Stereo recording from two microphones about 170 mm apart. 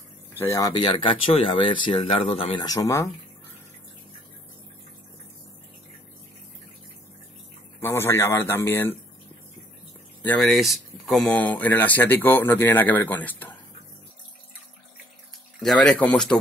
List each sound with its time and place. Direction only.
0.4 s speech: 15° left (ahead or behind); by 2.6 s 35° left (ahead or behind)
2.6 s speech: 20° left (ahead or behind)
7.8 s speech: 15° left (ahead or behind)
10.2 s speech: 5° left (ahead or behind)
15.6 s speech: centre (ahead or behind)